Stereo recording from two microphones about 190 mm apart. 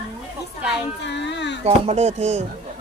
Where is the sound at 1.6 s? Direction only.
35° right (ahead or behind).